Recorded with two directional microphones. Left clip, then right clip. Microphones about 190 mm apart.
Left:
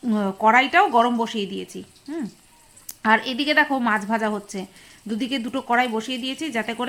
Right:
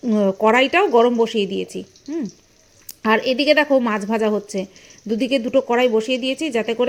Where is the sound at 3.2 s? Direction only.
30° left (ahead or behind).